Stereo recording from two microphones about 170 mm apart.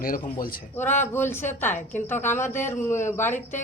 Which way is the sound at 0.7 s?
10° left (ahead or behind).